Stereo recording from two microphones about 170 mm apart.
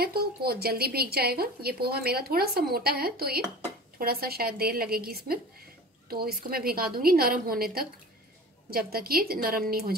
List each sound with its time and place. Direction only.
0.0 s a woman's voice: 65° right (ahead or behind)